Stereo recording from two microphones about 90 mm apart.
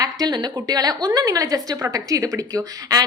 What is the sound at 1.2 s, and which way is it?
Speech, 40° right (ahead or behind).